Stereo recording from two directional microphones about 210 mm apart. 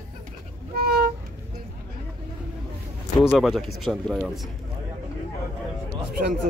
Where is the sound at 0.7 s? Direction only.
45° right (ahead or behind).